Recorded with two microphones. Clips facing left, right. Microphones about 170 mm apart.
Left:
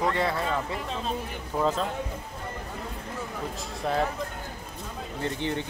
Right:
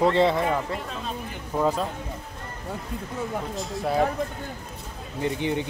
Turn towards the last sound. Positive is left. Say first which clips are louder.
# right 4 dB
turn(degrees=-15)  # may be behind; listen again after turning